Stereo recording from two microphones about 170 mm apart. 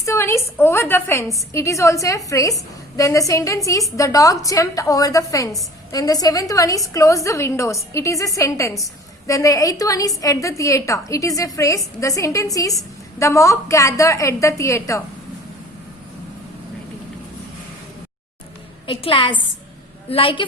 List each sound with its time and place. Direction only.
0.0 s a woman's voice: 15° left (ahead or behind)
18.9 s a woman's voice: 30° left (ahead or behind)